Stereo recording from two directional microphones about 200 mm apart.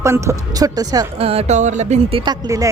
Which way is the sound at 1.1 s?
30° right (ahead or behind).